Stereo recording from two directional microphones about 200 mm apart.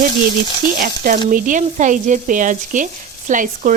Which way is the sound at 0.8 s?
40° right (ahead or behind).